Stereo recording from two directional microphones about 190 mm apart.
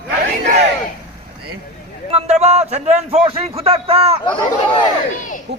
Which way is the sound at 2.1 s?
35° right (ahead or behind).